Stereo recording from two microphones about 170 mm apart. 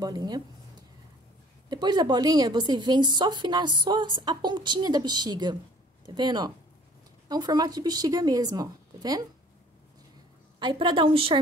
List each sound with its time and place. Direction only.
0.0 s speech: 25° right (ahead or behind)
1.7 s speech: 25° right (ahead or behind)
10.6 s speech: 30° right (ahead or behind)